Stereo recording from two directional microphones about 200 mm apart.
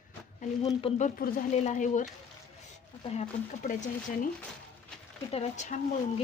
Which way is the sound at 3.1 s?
40° left (ahead or behind).